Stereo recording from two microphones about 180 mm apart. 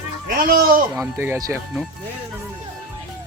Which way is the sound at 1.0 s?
15° right (ahead or behind).